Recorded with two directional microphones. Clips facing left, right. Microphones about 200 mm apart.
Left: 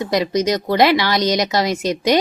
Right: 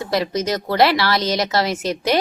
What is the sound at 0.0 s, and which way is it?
Speech, 15° left (ahead or behind).